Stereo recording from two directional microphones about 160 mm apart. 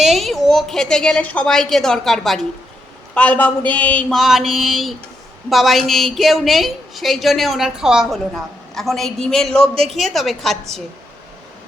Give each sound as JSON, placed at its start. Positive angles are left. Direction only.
{"t": 0.0, "sound": "a woman's voice", "side_deg": 0}
{"t": 9.6, "sound": "speech", "side_deg": -35}
{"t": 9.9, "sound": "a woman's voice", "side_deg": 0}